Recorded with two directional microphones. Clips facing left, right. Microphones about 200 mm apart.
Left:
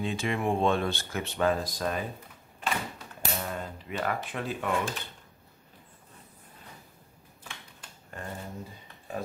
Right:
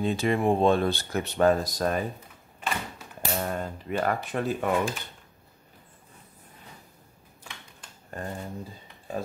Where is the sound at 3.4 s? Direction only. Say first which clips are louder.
Right 5 dB; 45° right (ahead or behind).